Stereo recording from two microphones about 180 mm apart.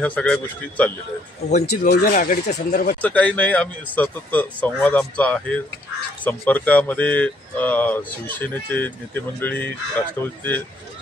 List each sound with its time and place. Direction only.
0.0 s speech: 5° left (ahead or behind)
1.7 s speech: 60° left (ahead or behind)
3.0 s speech: 10° left (ahead or behind)